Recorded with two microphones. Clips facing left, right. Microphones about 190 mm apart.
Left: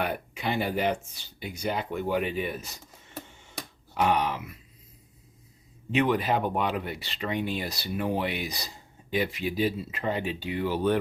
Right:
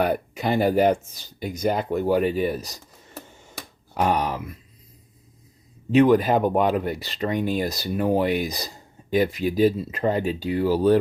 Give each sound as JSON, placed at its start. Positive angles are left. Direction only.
{"t": 0.0, "sound": "speech", "side_deg": -40}
{"t": 3.9, "sound": "speech", "side_deg": -40}
{"t": 5.9, "sound": "speech", "side_deg": -40}